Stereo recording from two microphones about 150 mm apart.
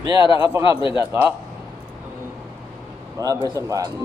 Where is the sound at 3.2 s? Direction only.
25° right (ahead or behind).